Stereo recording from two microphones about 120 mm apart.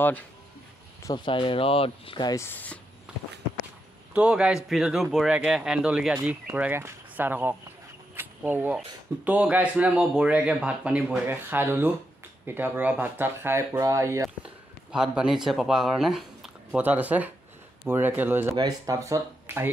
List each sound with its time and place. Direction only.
1.1 s speech: 45° left (ahead or behind)
2.2 s speech: 25° left (ahead or behind)
2.5 s speech: 15° left (ahead or behind)
4.1 s speech: 10° right (ahead or behind); by 14.3 s 25° right (ahead or behind)
14.4 s speech: 5° right (ahead or behind)
16.8 s speech: 15° right (ahead or behind)